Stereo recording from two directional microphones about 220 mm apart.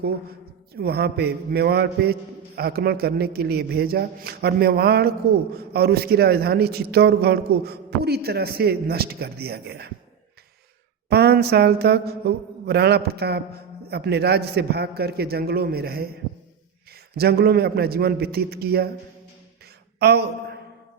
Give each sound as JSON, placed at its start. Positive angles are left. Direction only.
{"t": 0.8, "sound": "mantra", "side_deg": -45}
{"t": 11.1, "sound": "mantra", "side_deg": -45}
{"t": 17.2, "sound": "mantra", "side_deg": -45}
{"t": 20.0, "sound": "mantra", "side_deg": -50}